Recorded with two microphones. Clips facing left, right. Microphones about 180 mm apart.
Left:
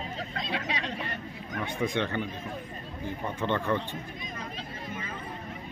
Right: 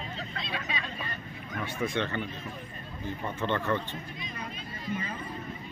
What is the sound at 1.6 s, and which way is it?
Speech, 15° left (ahead or behind).